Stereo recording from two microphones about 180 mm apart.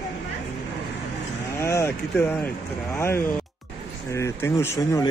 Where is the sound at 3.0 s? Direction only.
15° left (ahead or behind).